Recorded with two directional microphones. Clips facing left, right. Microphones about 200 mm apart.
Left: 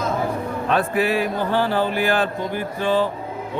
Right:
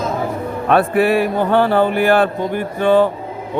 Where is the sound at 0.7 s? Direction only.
55° right (ahead or behind).